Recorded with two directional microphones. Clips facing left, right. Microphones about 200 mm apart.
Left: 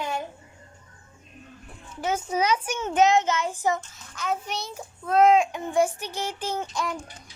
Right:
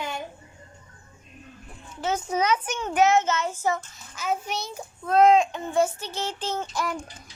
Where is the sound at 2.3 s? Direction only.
10° left (ahead or behind).